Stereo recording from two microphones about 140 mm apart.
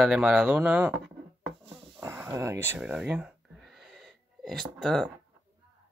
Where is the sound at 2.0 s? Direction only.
20° right (ahead or behind).